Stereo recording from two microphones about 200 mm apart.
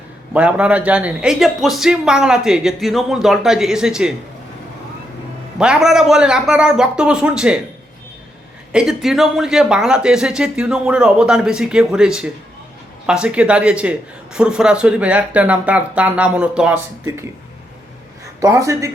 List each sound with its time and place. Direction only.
0.3 s speech: 5° right (ahead or behind)
5.5 s speech: 5° right (ahead or behind)
8.7 s speech: 5° right (ahead or behind)
18.3 s speech: 15° right (ahead or behind)